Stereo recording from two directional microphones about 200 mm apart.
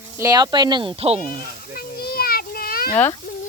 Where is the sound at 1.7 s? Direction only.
50° left (ahead or behind).